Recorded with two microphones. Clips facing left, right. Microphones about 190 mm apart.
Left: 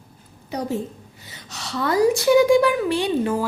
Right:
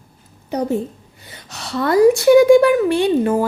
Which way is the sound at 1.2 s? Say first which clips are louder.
Right 3 dB; 55° right (ahead or behind).